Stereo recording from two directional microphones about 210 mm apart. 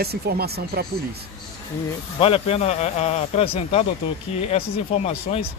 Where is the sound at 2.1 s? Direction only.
25° left (ahead or behind).